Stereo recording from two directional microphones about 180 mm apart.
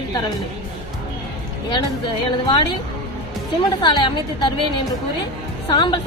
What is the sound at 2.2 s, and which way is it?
Speech, 25° left (ahead or behind).